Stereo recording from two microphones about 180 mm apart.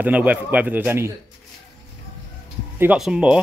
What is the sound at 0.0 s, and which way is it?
A man's voice, 10° right (ahead or behind).